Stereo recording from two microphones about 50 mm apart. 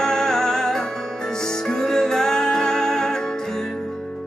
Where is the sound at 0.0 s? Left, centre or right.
Centre.